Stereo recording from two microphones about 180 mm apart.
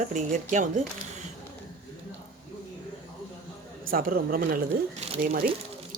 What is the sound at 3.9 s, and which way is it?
Speech, 55° right (ahead or behind).